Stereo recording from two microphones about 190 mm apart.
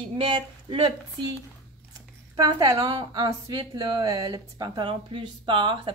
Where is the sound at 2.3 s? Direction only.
20° right (ahead or behind).